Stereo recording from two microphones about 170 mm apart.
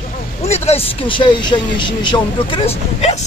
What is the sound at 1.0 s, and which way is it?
Speech, 30° left (ahead or behind).